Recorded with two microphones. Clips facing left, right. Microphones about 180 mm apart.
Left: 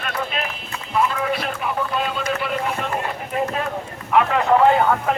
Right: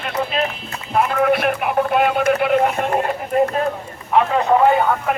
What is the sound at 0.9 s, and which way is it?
Speech, 55° right (ahead or behind).